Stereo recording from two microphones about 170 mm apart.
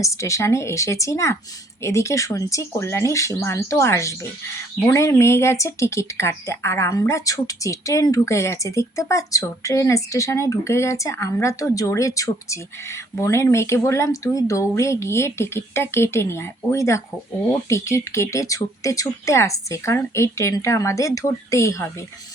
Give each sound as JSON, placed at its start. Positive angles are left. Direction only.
{"t": 0.0, "sound": "speech", "side_deg": 20}